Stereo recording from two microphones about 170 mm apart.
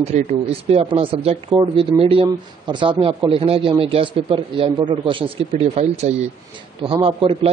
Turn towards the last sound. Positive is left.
turn(degrees=-30)  # may be behind; listen again after turning